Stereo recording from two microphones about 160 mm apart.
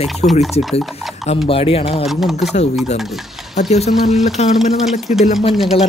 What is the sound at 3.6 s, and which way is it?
Speech, 45° left (ahead or behind).